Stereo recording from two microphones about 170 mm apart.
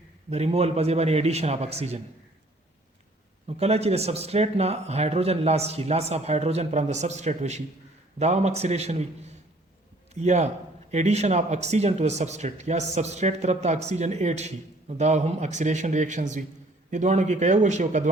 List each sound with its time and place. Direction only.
0.3 s speech: 40° right (ahead or behind)
3.4 s speech: 40° right (ahead or behind)